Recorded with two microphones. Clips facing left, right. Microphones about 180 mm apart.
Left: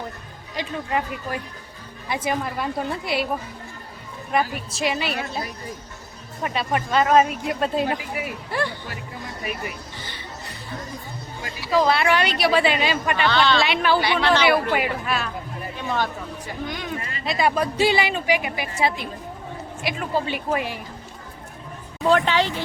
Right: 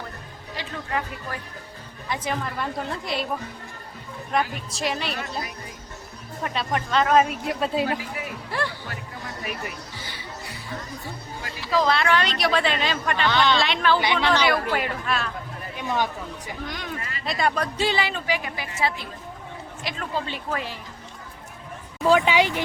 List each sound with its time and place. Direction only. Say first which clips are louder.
0.5 s a woman's voice: left 4 dB; 20° left (ahead or behind)
4.7 s speech: left 3 dB; centre (ahead or behind)
6.4 s speech: left 2 dB; 5° left (ahead or behind)
7.9 s speech: left 2 dB; 20° left (ahead or behind)
8.4 s speech: left 2 dB; centre (ahead or behind)
10.0 s music: left 1 dB; 10° right (ahead or behind)
11.8 s a woman's voice: left 2 dB; 5° left (ahead or behind)
13.3 s speech: left 1 dB; 15° right (ahead or behind)
13.6 s a woman's voice: left 2 dB; 10° left (ahead or behind)
14.0 s speech: left 2 dB; 20° right (ahead or behind)
14.4 s a woman's voice: left 3 dB; 5° left (ahead or behind)
16.6 s a woman's voice: left 4 dB; centre (ahead or behind)
22.0 s speech: even; 5° right (ahead or behind)